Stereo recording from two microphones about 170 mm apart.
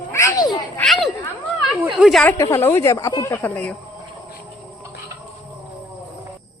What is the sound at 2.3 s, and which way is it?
Speech, 15° left (ahead or behind).